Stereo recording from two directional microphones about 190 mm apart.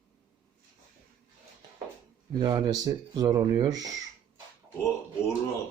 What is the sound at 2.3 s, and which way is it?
Speech, 20° right (ahead or behind).